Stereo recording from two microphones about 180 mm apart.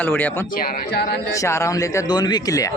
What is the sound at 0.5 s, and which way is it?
Speech, 55° left (ahead or behind).